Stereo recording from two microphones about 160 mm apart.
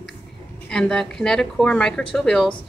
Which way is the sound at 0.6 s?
5° left (ahead or behind).